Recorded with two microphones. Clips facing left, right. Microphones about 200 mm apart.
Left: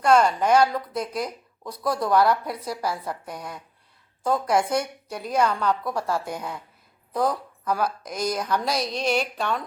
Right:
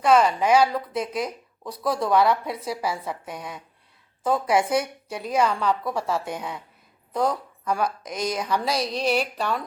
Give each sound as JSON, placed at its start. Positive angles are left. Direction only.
{"t": 0.0, "sound": "a woman's voice", "side_deg": 0}
{"t": 8.7, "sound": "a woman's voice", "side_deg": -30}
{"t": 9.0, "sound": "a woman's voice", "side_deg": -5}